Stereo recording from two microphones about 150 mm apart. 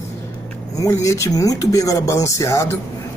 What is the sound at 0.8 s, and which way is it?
Speech, 20° left (ahead or behind).